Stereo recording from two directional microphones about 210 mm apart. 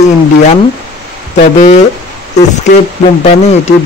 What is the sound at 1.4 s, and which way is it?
Speech, 35° left (ahead or behind).